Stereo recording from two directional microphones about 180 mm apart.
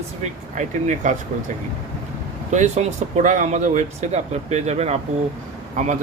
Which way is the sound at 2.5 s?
40° right (ahead or behind).